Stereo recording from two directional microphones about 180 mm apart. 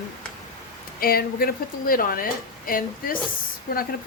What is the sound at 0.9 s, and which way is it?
A woman's voice, 55° left (ahead or behind).